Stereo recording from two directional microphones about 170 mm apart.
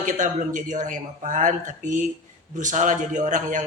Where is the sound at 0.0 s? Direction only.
45° right (ahead or behind).